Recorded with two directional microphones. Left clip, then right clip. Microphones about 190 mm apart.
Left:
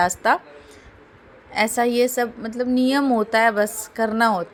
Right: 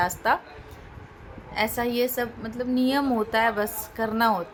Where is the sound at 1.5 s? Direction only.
30° left (ahead or behind).